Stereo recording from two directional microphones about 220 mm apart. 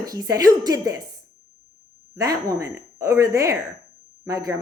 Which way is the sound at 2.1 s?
15° right (ahead or behind).